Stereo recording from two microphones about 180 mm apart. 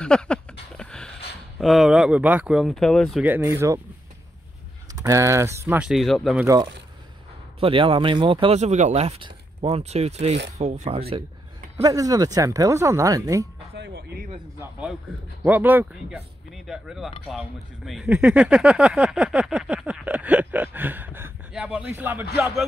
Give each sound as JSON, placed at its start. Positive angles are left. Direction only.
{"t": 0.0, "sound": "a sound", "side_deg": 5}
{"t": 1.6, "sound": "speech", "side_deg": 0}
{"t": 3.3, "sound": "speech", "side_deg": -10}
{"t": 4.9, "sound": "speech", "side_deg": -15}
{"t": 6.4, "sound": "speech", "side_deg": -20}
{"t": 11.7, "sound": "speech", "side_deg": -20}
{"t": 13.7, "sound": "speech", "side_deg": -60}
{"t": 14.6, "sound": "speech", "side_deg": -5}